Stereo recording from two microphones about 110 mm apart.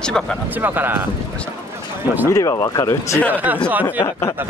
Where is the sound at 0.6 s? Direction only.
20° right (ahead or behind).